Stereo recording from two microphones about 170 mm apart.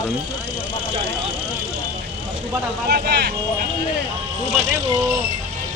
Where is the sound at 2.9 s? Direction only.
70° right (ahead or behind).